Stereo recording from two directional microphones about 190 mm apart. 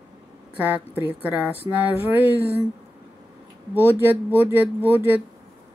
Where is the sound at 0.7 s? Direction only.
10° right (ahead or behind).